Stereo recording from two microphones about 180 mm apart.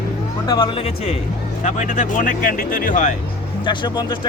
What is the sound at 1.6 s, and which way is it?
Speech, 40° left (ahead or behind).